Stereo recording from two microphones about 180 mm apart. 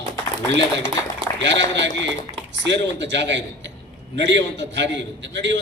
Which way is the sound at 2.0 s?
80° right.